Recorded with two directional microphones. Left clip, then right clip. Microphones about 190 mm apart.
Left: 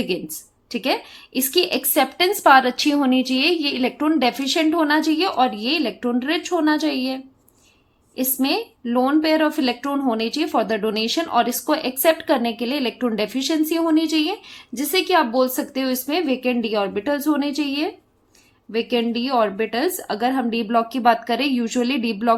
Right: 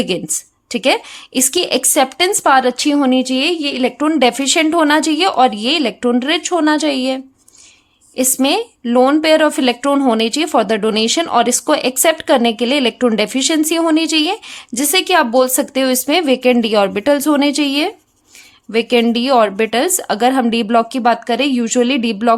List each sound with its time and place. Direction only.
0.7 s a woman's voice: 30° right (ahead or behind)